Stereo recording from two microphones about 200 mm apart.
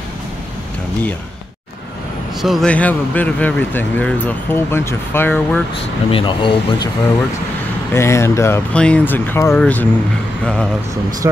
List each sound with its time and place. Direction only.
2.4 s speech: centre (ahead or behind)
6.1 s speech: 25° left (ahead or behind)
7.9 s speech: 15° left (ahead or behind)